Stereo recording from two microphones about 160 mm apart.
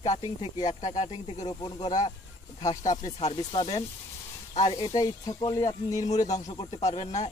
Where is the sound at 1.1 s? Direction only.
25° left (ahead or behind).